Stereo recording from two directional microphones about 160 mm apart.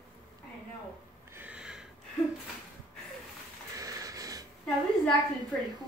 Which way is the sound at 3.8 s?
20° right (ahead or behind).